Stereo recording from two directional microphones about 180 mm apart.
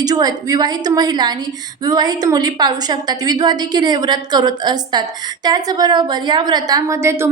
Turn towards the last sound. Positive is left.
turn(degrees=-15)  # may be behind; listen again after turning